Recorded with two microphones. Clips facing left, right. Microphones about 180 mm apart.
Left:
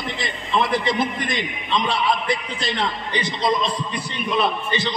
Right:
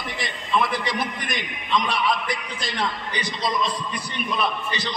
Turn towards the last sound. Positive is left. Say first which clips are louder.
# left 4 dB
turn(degrees=25)  # may be behind; listen again after turning